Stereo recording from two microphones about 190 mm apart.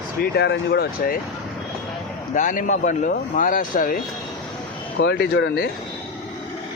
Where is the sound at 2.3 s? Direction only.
45° left (ahead or behind).